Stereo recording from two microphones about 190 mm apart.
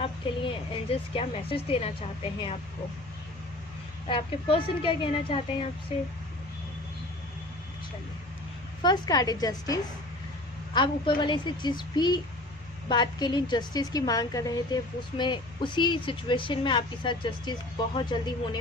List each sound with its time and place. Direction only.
0.0 s a woman's voice: 30° left (ahead or behind)
4.1 s a woman's voice: 25° left (ahead or behind)
8.8 s a woman's voice: 20° left (ahead or behind)